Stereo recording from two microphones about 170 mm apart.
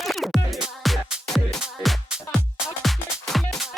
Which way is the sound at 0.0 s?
Centre (ahead or behind).